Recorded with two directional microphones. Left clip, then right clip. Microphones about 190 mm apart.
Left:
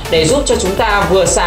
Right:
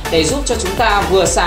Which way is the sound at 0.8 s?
30° right (ahead or behind).